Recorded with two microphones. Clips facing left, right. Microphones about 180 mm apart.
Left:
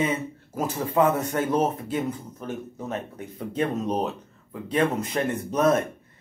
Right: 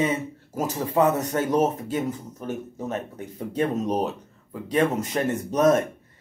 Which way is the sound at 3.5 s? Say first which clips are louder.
Right 1 dB; 40° right (ahead or behind).